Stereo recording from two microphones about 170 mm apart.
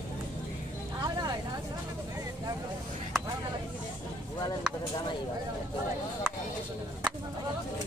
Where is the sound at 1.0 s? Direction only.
25° right (ahead or behind).